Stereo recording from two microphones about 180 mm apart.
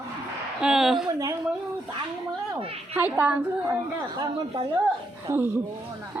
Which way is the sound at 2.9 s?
10° right (ahead or behind).